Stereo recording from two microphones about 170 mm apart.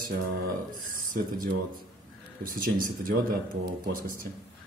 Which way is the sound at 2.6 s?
60° right (ahead or behind).